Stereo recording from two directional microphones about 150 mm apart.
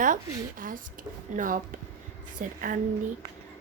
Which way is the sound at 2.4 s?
65° right (ahead or behind).